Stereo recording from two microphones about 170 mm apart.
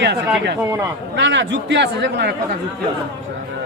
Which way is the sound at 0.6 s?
20° right (ahead or behind).